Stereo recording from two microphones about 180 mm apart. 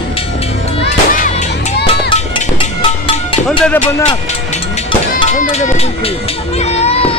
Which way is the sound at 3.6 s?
10° left (ahead or behind).